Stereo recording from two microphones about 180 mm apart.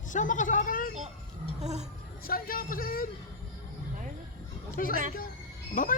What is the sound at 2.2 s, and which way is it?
Speech, 55° left (ahead or behind).